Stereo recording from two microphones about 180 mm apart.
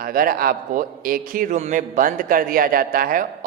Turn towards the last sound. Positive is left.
turn(degrees=-50)  # may be behind; listen again after turning